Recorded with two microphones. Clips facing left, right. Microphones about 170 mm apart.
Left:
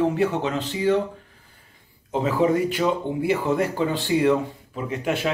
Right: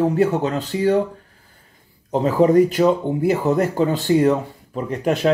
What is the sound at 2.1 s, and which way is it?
Speech, 40° right (ahead or behind).